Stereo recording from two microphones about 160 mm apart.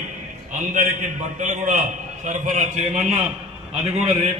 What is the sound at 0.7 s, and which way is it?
A man's voice, 50° right (ahead or behind).